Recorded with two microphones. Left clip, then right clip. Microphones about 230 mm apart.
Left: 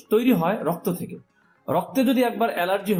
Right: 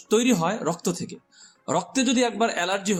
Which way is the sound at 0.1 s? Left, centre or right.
Right.